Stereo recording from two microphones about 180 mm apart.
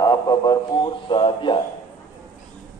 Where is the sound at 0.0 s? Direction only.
20° left (ahead or behind).